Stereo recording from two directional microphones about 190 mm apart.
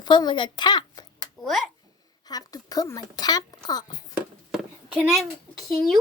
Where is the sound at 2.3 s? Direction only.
20° left (ahead or behind).